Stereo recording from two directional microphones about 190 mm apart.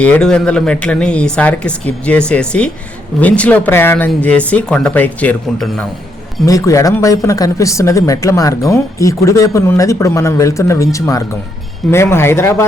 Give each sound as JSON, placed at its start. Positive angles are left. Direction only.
{"t": 0.0, "sound": "speech", "side_deg": 5}
{"t": 6.4, "sound": "speech", "side_deg": 15}